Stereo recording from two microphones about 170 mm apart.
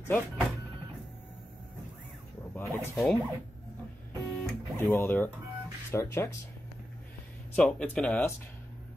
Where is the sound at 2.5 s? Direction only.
15° left (ahead or behind).